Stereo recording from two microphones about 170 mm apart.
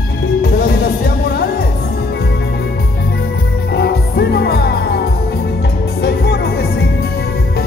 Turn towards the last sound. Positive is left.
turn(degrees=75)  # may be behind; listen again after turning